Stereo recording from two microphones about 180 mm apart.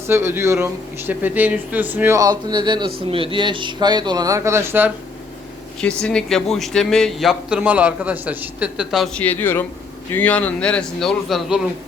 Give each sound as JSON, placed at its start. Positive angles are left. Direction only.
{"t": 0.1, "sound": "speech", "side_deg": -15}
{"t": 5.8, "sound": "a man's voice", "side_deg": 5}
{"t": 9.2, "sound": "a man's voice", "side_deg": 10}